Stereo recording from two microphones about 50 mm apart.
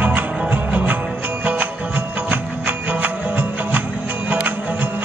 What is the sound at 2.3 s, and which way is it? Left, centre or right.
Music, right.